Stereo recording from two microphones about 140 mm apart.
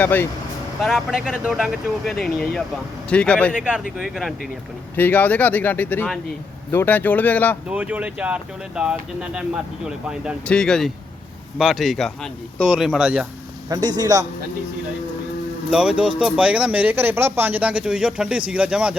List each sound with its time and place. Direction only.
0.0 s speech: 15° left (ahead or behind)
0.8 s speech: centre (ahead or behind)
3.5 s speech: 10° right (ahead or behind)
4.9 s speech: 15° left (ahead or behind)
7.7 s speech: 10° right (ahead or behind)
10.4 s speech: 5° left (ahead or behind)
13.7 s speech: 30° right (ahead or behind)
15.7 s speech: 5° right (ahead or behind)